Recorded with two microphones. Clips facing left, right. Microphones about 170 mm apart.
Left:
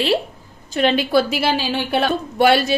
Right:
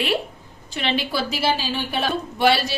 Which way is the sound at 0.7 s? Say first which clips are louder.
Left 8 dB; 45° left (ahead or behind).